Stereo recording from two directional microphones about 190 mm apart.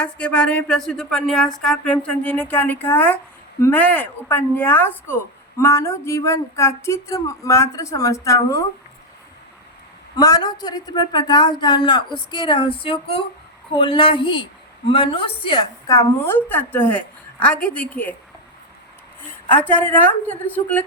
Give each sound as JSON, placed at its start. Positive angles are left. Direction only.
{"t": 0.0, "sound": "speech", "side_deg": 5}
{"t": 10.2, "sound": "speech", "side_deg": 20}
{"t": 19.3, "sound": "speech", "side_deg": 10}